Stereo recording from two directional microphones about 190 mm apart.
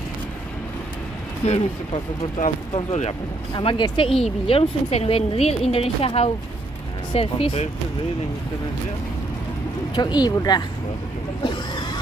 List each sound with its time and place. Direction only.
1.4 s speech: 35° left (ahead or behind)
2.7 s speech: 35° left (ahead or behind)
3.5 s speech: 25° left (ahead or behind)
9.9 s speech: 25° left (ahead or behind)
11.4 s neigh: 25° left (ahead or behind)